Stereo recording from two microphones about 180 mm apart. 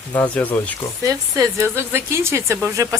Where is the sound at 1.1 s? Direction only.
20° right (ahead or behind).